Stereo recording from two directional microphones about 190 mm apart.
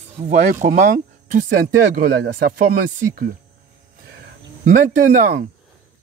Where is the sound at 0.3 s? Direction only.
40° right (ahead or behind).